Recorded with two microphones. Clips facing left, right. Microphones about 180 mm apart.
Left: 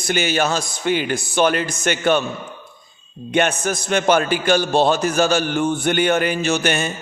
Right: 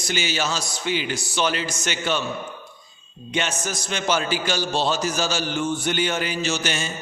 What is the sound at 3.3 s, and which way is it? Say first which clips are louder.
A man's voice: left 8 dB; 60° left (ahead or behind).